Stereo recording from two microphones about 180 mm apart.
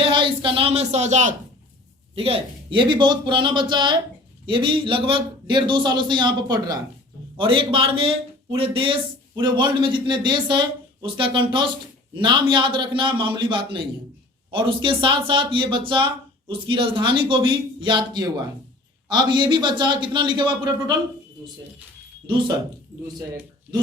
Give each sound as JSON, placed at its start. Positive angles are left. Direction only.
{"t": 0.0, "sound": "speech", "side_deg": -25}
{"t": 2.1, "sound": "speech", "side_deg": -30}